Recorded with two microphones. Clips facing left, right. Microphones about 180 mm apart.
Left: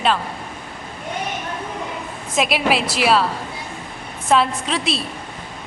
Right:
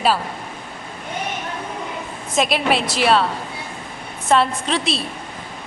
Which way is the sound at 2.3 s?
5° left (ahead or behind).